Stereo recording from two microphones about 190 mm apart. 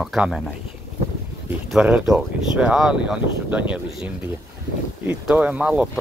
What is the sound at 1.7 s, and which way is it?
Speech, 5° right (ahead or behind).